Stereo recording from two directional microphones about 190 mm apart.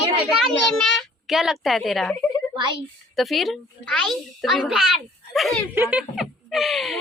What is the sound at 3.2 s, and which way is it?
A child's voice, centre (ahead or behind).